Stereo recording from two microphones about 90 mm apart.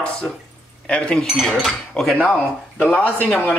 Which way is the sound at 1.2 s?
Centre (ahead or behind).